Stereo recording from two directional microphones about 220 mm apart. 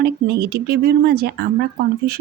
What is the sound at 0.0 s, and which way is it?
Speech, 50° right (ahead or behind).